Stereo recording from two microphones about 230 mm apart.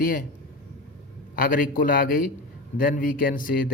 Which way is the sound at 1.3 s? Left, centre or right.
Left.